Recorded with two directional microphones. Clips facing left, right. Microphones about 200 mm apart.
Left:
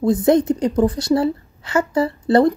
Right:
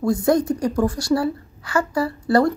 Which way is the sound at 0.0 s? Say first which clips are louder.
Left 3 dB; 20° left (ahead or behind).